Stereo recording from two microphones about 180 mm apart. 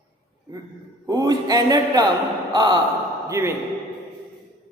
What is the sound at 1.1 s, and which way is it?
A man's voice, 20° right (ahead or behind).